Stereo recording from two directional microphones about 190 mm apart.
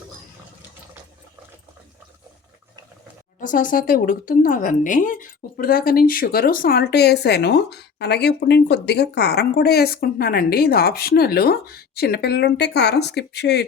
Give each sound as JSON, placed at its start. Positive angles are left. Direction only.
{"t": 3.4, "sound": "a woman's voice", "side_deg": 45}